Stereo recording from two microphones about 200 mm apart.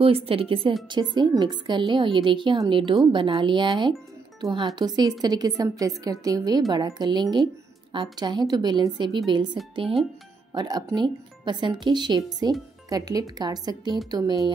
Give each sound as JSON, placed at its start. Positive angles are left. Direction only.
{"t": 0.0, "sound": "a woman's voice", "side_deg": -30}